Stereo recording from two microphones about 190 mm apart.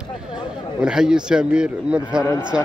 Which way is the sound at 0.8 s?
5° right (ahead or behind).